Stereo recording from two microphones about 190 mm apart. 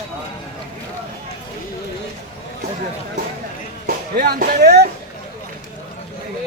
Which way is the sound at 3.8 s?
55° right (ahead or behind).